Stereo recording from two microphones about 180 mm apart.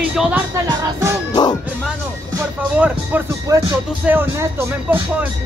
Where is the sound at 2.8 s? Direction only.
10° right (ahead or behind).